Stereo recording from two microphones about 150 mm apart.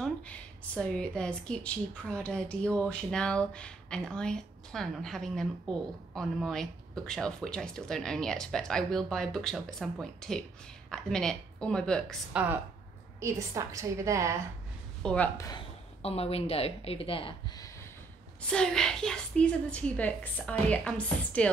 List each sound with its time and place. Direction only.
0.0 s a woman's voice: 5° left (ahead or behind)
12.3 s speech: 10° right (ahead or behind)
13.2 s a woman's voice: 20° right (ahead or behind)
15.0 s a woman's voice: 10° left (ahead or behind)
16.0 s a woman's voice: 40° left (ahead or behind)
18.5 s a woman's voice: 5° left (ahead or behind)